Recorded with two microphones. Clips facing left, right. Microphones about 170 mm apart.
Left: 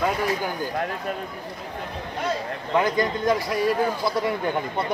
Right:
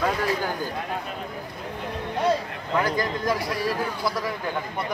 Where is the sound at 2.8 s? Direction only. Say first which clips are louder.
Left 2 dB; 25° left (ahead or behind).